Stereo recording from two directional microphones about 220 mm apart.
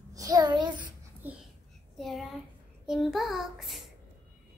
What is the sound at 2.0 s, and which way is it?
A child's voice, centre (ahead or behind).